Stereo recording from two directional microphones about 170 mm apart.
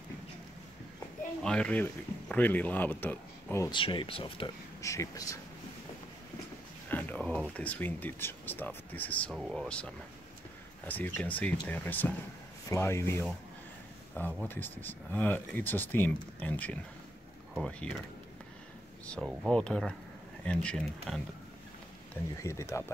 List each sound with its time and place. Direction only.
1.4 s speech: 5° left (ahead or behind)
3.7 s speech: 30° left (ahead or behind)
4.8 s speech: 20° left (ahead or behind)
6.9 s speech: 10° left (ahead or behind)
19.5 s speech: 5° left (ahead or behind)
22.4 s speech: 15° left (ahead or behind)